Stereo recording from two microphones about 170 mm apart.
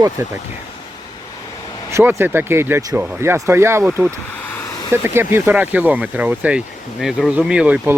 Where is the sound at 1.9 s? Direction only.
15° right (ahead or behind).